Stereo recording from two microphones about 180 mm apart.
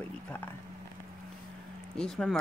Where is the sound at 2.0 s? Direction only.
5° left (ahead or behind).